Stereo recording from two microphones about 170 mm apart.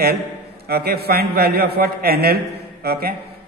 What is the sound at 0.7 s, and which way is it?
A man's voice, 65° right (ahead or behind).